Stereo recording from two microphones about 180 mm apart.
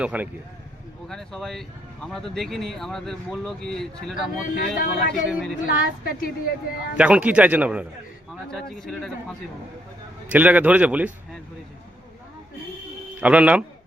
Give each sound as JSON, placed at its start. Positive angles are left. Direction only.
{"t": 0.0, "sound": "a man's voice", "side_deg": -5}
{"t": 4.1, "sound": "speech", "side_deg": 55}
{"t": 5.3, "sound": "speech", "side_deg": 0}
{"t": 6.1, "sound": "a woman's voice", "side_deg": 55}
{"t": 6.9, "sound": "a man's voice", "side_deg": -5}
{"t": 10.2, "sound": "a man's voice", "side_deg": -10}
{"t": 13.1, "sound": "a man's voice", "side_deg": -5}